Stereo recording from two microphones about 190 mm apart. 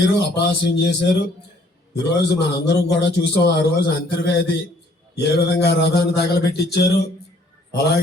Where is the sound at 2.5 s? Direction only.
60° left (ahead or behind).